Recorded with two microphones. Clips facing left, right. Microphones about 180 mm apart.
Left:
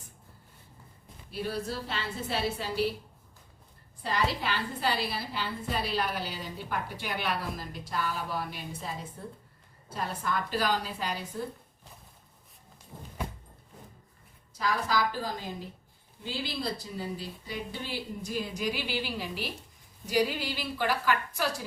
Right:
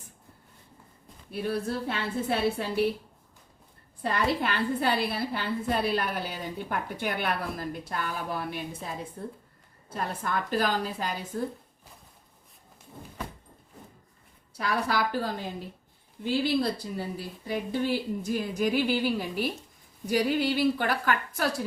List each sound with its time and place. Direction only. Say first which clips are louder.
1.3 s a woman's voice: right 4 dB; 55° right (ahead or behind)
4.0 s a woman's voice: right 3 dB; 55° right (ahead or behind)
9.9 s speech: right 2 dB; 50° right (ahead or behind)
14.5 s a woman's voice: right 1 dB; 60° right (ahead or behind)